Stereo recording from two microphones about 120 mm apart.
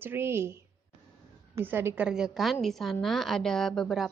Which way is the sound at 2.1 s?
5° right (ahead or behind).